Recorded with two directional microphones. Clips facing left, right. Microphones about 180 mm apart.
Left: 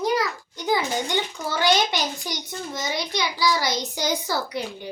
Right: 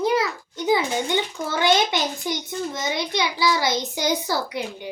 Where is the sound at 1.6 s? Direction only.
20° right (ahead or behind).